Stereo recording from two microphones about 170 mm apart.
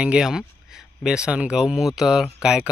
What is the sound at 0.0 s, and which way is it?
A man's voice, 5° right (ahead or behind).